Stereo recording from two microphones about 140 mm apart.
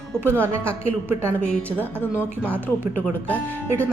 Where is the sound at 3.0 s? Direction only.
10° left (ahead or behind).